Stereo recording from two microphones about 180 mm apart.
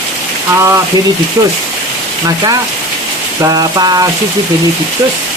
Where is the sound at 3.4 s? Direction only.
20° right (ahead or behind).